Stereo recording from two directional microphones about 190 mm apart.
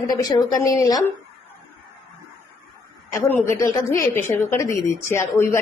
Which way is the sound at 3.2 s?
15° left (ahead or behind).